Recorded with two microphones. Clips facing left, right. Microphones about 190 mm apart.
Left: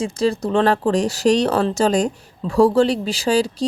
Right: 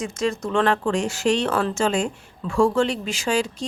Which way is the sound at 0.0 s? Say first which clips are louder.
Left 5 dB; 35° left (ahead or behind).